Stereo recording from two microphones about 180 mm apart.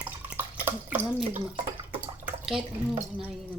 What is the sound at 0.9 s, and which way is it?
Speech, 10° right (ahead or behind).